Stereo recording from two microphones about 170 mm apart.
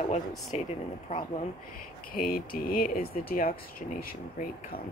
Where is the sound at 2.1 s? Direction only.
55° left (ahead or behind).